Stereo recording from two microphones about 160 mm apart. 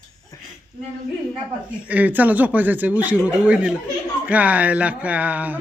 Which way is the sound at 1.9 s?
10° right (ahead or behind).